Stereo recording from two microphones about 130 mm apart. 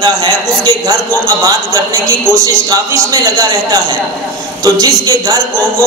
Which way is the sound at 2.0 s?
25° right (ahead or behind).